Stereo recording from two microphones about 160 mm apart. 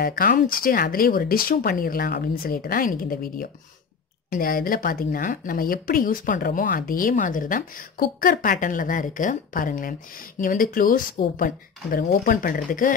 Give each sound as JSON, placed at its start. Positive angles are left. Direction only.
{"t": 0.0, "sound": "speech", "side_deg": 65}